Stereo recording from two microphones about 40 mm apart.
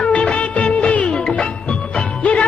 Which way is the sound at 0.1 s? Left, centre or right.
Left.